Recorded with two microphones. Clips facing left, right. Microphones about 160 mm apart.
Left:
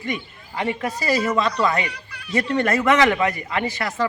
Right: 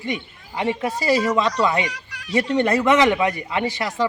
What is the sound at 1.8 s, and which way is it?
Cat, 90° right.